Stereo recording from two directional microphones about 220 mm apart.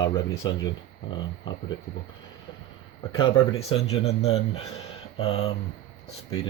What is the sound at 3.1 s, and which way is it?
Speech, 25° left (ahead or behind).